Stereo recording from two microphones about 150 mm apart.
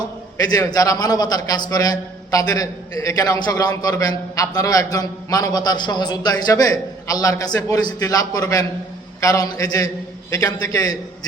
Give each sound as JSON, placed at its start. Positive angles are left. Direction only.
{"t": 0.3, "sound": "a man's voice", "side_deg": 25}